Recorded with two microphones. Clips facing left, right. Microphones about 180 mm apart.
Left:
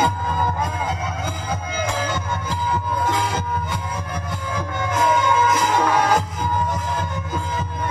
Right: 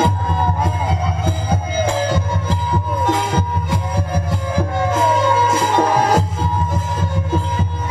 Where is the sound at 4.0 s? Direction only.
30° right (ahead or behind).